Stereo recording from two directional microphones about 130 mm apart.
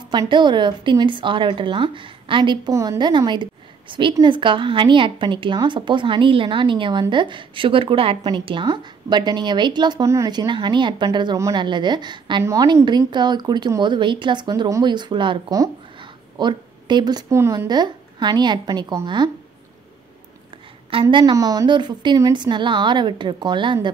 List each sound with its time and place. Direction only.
0.1 s a woman's voice: 35° right (ahead or behind)
2.7 s a woman's voice: 25° right (ahead or behind)
12.4 s a woman's voice: 25° right (ahead or behind)
16.0 s a sound: 35° right (ahead or behind)
17.3 s speech: 20° right (ahead or behind)
17.6 s a woman's voice: 35° right (ahead or behind)
20.9 s a woman's voice: 40° right (ahead or behind)